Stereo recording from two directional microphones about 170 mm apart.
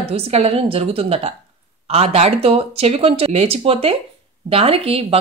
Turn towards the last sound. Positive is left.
turn(degrees=-35)  # may be behind; listen again after turning